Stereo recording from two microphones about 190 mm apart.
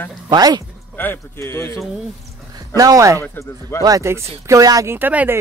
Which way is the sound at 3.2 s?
15° left (ahead or behind).